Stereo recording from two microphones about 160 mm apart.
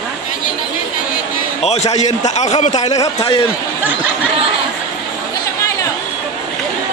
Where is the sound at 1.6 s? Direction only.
45° left (ahead or behind).